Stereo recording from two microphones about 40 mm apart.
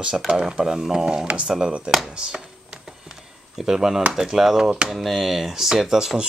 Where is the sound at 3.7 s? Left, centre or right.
Centre.